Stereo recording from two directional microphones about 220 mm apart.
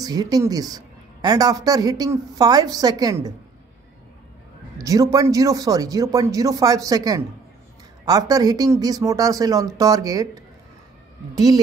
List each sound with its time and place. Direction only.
0.0 s a woman's voice: 15° right (ahead or behind)
4.7 s a woman's voice: 15° right (ahead or behind)